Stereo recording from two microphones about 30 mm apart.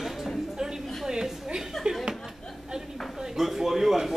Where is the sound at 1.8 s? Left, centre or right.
Centre.